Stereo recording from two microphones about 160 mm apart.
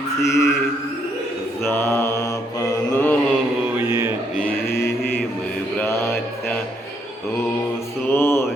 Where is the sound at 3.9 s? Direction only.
15° right (ahead or behind).